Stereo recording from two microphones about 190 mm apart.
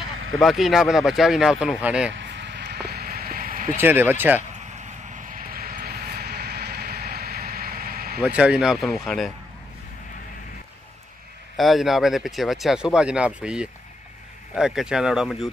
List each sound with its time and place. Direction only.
0.4 s speech: centre (ahead or behind)
2.1 s a sound: 65° right (ahead or behind); by 3.7 s 50° right (ahead or behind)
3.7 s speech: 10° right (ahead or behind)
4.6 s vehicle: 40° right (ahead or behind)
8.2 s speech: 5° right (ahead or behind)
11.5 s speech: centre (ahead or behind)